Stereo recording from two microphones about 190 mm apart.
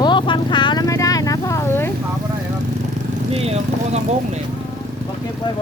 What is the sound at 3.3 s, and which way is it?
Speech, 35° right (ahead or behind).